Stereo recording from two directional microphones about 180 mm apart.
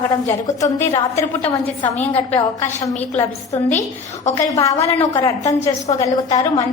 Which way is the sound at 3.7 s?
40° left (ahead or behind).